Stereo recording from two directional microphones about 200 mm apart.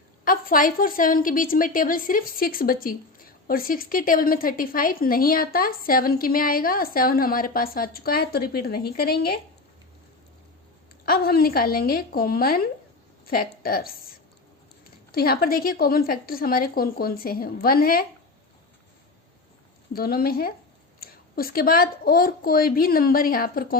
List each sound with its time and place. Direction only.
0.3 s a woman's voice: 45° left (ahead or behind)
11.0 s a woman's voice: 50° left (ahead or behind)
19.9 s a woman's voice: 50° left (ahead or behind)